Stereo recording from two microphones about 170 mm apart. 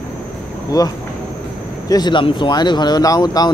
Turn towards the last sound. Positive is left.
turn(degrees=25)  # may be behind; listen again after turning